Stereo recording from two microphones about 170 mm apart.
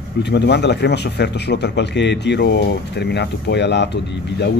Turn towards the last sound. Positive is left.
turn(degrees=90)